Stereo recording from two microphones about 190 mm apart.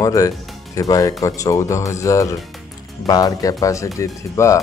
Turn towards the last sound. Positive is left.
turn(degrees=15)  # may be behind; listen again after turning